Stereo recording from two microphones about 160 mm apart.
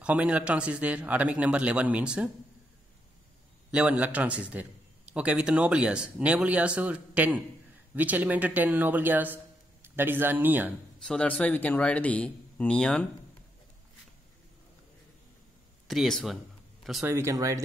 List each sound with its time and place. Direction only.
0.0 s a man's voice: 5° right (ahead or behind)
3.7 s a man's voice: 10° right (ahead or behind)
11.0 s speech: 5° left (ahead or behind)
15.9 s speech: centre (ahead or behind)
17.0 s a man's voice: 15° right (ahead or behind)